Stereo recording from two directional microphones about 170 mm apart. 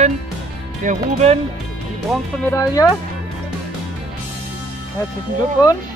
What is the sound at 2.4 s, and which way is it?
Speech, 20° left (ahead or behind).